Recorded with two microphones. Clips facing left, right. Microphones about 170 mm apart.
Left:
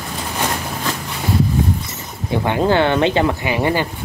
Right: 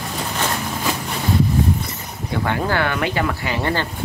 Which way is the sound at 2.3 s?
20° left (ahead or behind).